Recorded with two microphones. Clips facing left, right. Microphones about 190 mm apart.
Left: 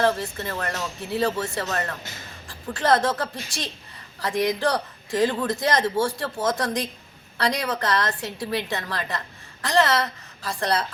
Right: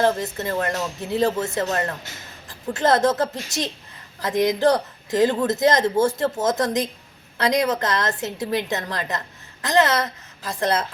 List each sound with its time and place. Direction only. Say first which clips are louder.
0.0 s a woman's voice: right 2 dB; 20° right (ahead or behind)